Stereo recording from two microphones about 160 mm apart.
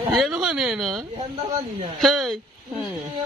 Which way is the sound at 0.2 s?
5° right (ahead or behind).